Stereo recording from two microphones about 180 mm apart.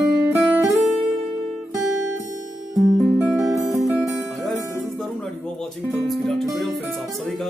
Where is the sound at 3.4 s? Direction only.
15° right (ahead or behind).